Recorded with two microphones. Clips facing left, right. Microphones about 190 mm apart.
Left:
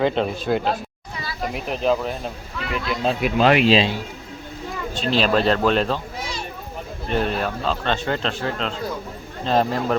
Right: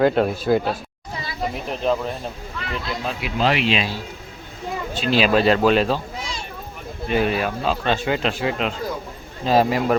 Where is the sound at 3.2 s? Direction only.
50° left (ahead or behind).